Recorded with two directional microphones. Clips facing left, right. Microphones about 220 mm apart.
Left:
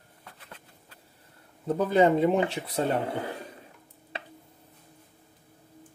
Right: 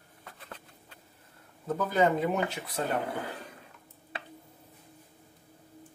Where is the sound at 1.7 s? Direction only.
30° left (ahead or behind).